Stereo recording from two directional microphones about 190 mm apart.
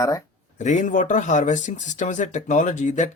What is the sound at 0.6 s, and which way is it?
Speech, 40° left (ahead or behind).